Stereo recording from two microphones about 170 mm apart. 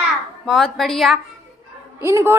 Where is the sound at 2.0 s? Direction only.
15° right (ahead or behind).